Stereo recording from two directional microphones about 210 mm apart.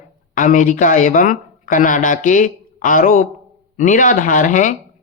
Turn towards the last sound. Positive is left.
turn(degrees=35)  # may be behind; listen again after turning